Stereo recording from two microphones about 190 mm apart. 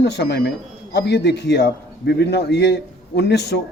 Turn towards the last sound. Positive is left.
turn(degrees=60)  # may be behind; listen again after turning